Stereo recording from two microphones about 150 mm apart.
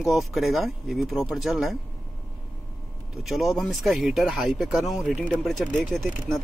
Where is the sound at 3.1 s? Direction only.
Centre (ahead or behind).